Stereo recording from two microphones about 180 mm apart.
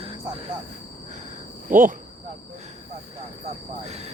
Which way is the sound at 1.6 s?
50° right (ahead or behind).